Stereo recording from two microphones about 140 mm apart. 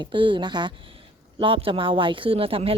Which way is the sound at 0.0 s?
35° right (ahead or behind).